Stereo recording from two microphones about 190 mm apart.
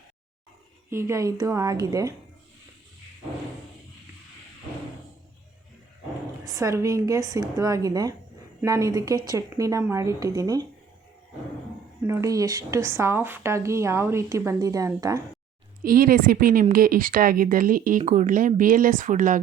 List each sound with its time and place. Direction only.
0.9 s speech: 15° right (ahead or behind)
6.5 s speech: 15° right (ahead or behind)
12.0 s speech: 15° right (ahead or behind)
15.8 s a woman's voice: 50° right (ahead or behind)